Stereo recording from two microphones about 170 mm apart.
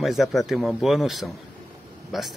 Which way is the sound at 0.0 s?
Centre (ahead or behind).